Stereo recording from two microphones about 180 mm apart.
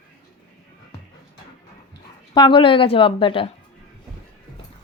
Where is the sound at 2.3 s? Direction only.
25° left (ahead or behind).